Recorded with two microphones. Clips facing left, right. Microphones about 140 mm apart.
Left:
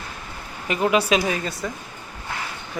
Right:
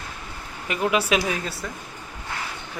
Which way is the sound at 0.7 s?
5° right (ahead or behind).